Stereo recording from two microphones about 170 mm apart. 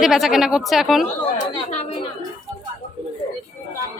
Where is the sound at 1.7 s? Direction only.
35° left (ahead or behind).